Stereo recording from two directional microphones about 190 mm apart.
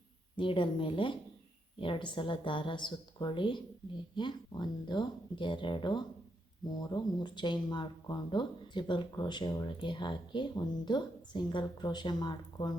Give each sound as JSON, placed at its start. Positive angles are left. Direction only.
{"t": 0.3, "sound": "speech", "side_deg": 25}